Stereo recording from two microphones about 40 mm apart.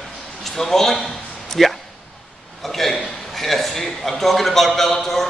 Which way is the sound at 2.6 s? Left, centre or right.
Centre.